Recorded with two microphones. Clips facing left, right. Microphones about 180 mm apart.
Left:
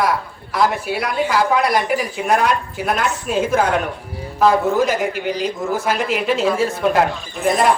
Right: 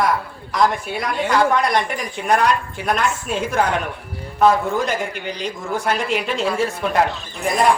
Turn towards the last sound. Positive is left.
turn(degrees=0)  # may be behind; listen again after turning